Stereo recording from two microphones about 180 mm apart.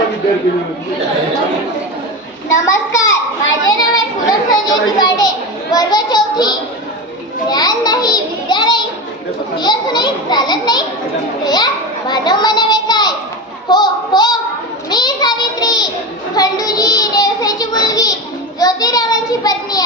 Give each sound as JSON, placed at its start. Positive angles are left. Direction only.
{"t": 2.5, "sound": "a child's voice", "side_deg": 15}
{"t": 3.8, "sound": "children playing", "side_deg": 20}
{"t": 5.7, "sound": "a child's voice", "side_deg": 20}